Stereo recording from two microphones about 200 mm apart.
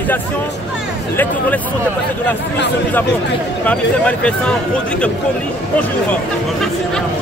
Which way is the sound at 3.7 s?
5° left (ahead or behind).